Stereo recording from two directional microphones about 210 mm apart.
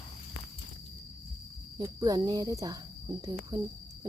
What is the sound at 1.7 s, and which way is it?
Speech, 15° right (ahead or behind).